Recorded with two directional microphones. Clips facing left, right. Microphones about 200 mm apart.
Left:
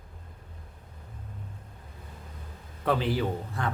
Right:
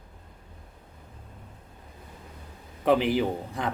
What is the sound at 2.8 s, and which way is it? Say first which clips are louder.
Speech: right 4 dB; 15° right (ahead or behind).